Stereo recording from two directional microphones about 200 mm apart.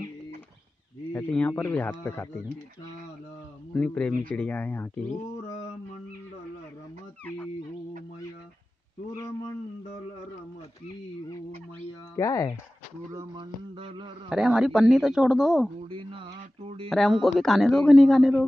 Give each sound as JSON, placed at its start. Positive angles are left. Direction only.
{"t": 1.1, "sound": "speech", "side_deg": 5}
{"t": 3.7, "sound": "speech", "side_deg": 5}
{"t": 12.2, "sound": "speech", "side_deg": 15}
{"t": 13.1, "sound": "a sound", "side_deg": -20}
{"t": 14.3, "sound": "speech", "side_deg": -5}
{"t": 15.9, "sound": "a sound", "side_deg": -25}
{"t": 16.9, "sound": "speech", "side_deg": 0}